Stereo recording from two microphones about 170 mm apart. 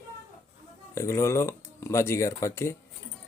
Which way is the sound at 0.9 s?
15° left (ahead or behind).